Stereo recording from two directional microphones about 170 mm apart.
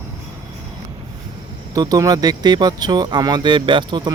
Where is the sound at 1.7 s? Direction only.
20° right (ahead or behind).